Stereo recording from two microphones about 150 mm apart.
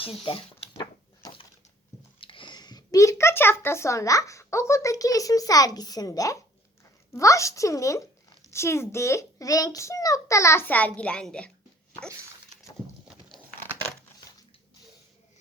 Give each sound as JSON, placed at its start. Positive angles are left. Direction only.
{"t": 0.0, "sound": "speech", "side_deg": 35}
{"t": 0.8, "sound": "a sound", "side_deg": 30}
{"t": 2.2, "sound": "a child's voice", "side_deg": 35}